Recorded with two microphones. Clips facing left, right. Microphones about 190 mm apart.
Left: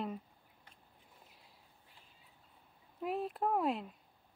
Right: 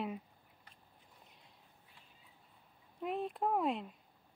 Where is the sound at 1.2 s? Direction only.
5° left (ahead or behind).